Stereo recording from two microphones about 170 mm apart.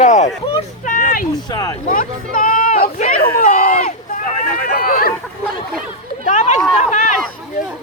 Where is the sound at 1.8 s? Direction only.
50° left (ahead or behind).